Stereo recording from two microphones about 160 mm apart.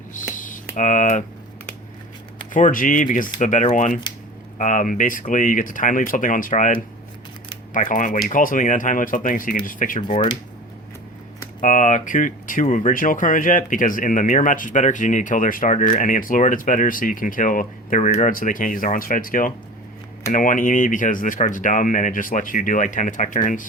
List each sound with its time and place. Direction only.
0.3 s typing: 55° left (ahead or behind)
0.8 s speech: 55° left (ahead or behind)
2.5 s speech: 55° left (ahead or behind)
10.1 s speech: 35° left (ahead or behind)
11.6 s speech: 50° left (ahead or behind)